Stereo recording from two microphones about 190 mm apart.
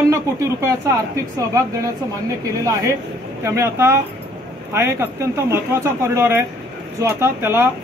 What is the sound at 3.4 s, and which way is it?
Speech, 15° right (ahead or behind).